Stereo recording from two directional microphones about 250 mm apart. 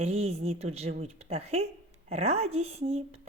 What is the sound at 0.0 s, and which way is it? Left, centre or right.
A woman's voice, right.